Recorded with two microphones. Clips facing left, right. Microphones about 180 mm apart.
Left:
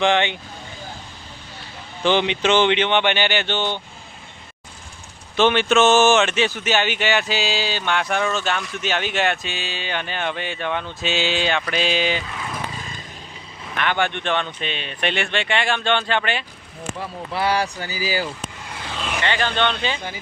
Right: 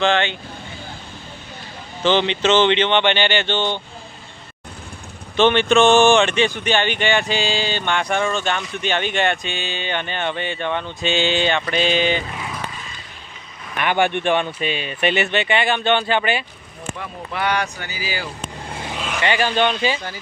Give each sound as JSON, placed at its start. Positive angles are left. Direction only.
{"t": 0.0, "sound": "speech", "side_deg": 15}
{"t": 2.0, "sound": "speech", "side_deg": 10}
{"t": 5.4, "sound": "a sound", "side_deg": 5}
{"t": 13.7, "sound": "a sound", "side_deg": -15}
{"t": 17.0, "sound": "speech", "side_deg": 30}
{"t": 18.7, "sound": "vehicle", "side_deg": -25}
{"t": 19.2, "sound": "speech", "side_deg": -10}